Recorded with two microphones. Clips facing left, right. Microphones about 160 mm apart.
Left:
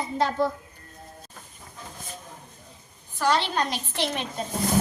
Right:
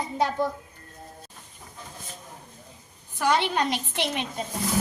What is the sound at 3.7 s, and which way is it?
Speech, 60° right (ahead or behind).